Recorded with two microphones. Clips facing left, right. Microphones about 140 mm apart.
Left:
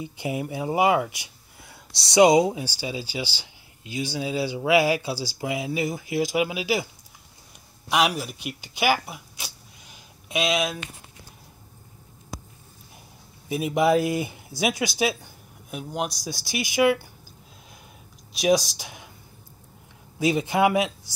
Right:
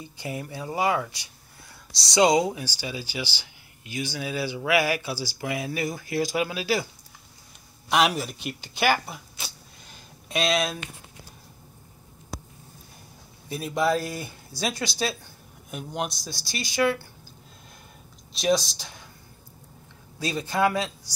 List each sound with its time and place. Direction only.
0.0 s speech: 15° left (ahead or behind)
7.9 s speech: 5° left (ahead or behind)
12.3 s a sound: centre (ahead or behind)
13.5 s speech: 15° left (ahead or behind)
15.7 s speech: 5° left (ahead or behind)
16.3 s speech: 15° left (ahead or behind)
18.4 s speech: 15° left (ahead or behind)
20.2 s speech: 20° left (ahead or behind)